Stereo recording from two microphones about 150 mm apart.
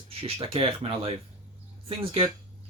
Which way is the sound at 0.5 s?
35° right (ahead or behind).